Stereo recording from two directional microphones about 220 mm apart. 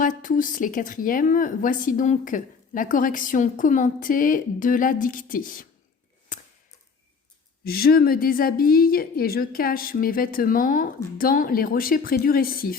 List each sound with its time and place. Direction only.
0.0 s speech: 35° left (ahead or behind)
7.6 s speech: 45° left (ahead or behind)